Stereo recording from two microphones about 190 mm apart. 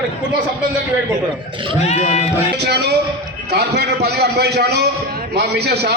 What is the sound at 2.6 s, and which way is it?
A man's voice, 60° right (ahead or behind).